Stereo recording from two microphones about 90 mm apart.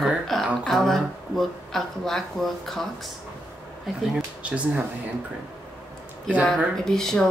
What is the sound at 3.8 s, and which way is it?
Speech, 10° right (ahead or behind).